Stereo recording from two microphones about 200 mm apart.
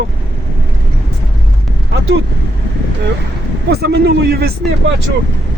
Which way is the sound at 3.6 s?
55° right (ahead or behind).